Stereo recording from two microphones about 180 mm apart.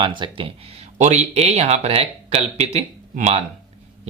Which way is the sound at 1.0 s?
40° right (ahead or behind).